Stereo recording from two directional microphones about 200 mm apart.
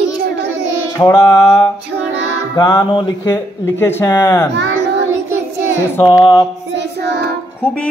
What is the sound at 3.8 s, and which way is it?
Speech, 10° left (ahead or behind).